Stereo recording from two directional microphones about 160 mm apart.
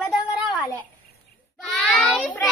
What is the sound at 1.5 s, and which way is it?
Speech, centre (ahead or behind).